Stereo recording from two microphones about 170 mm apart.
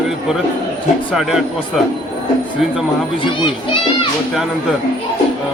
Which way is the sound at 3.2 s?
30° left (ahead or behind).